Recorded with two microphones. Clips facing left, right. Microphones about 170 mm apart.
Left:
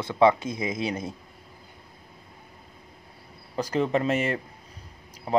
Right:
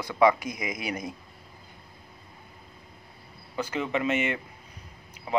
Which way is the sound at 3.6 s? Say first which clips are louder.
Left 4 dB; 35° left (ahead or behind).